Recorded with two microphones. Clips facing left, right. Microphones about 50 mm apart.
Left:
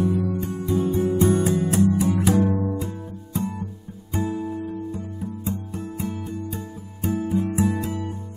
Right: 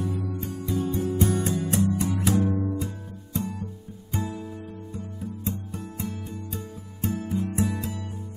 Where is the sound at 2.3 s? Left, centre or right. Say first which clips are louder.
Left 3 dB; left.